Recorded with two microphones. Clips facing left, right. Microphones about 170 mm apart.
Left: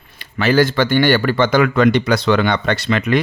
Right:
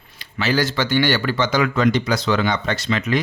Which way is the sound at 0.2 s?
55° left (ahead or behind).